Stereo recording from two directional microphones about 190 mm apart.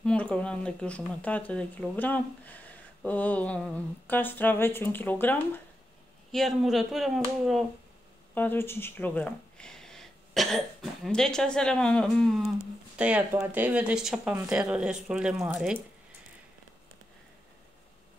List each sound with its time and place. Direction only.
0.0 s speech: 5° left (ahead or behind)
8.4 s speech: 10° left (ahead or behind); by 15.8 s 5° right (ahead or behind)